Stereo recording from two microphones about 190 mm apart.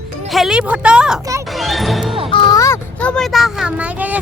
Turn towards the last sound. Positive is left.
turn(degrees=-10)  # may be behind; listen again after turning